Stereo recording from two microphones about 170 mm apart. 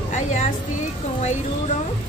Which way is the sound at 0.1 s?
45° left (ahead or behind).